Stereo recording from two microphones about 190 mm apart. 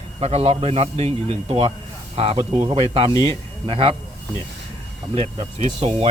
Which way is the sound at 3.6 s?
30° right (ahead or behind).